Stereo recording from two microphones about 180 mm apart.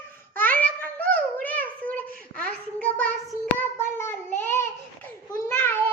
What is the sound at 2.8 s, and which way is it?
Child singing, 10° left (ahead or behind).